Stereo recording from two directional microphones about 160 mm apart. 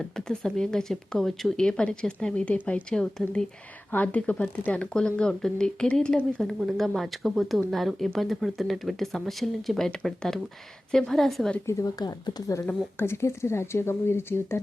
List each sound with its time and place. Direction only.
0.0 s speech: 5° left (ahead or behind)
11.6 s speech: 20° left (ahead or behind)